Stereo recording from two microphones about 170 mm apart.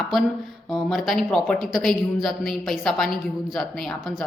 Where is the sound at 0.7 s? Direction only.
Centre (ahead or behind).